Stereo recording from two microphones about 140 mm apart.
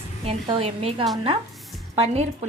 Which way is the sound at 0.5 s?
45° right (ahead or behind).